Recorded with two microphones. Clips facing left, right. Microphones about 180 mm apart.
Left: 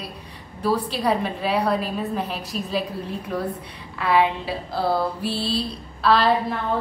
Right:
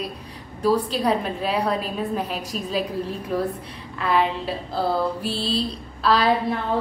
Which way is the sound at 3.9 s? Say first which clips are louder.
Left 2 dB; 5° left (ahead or behind).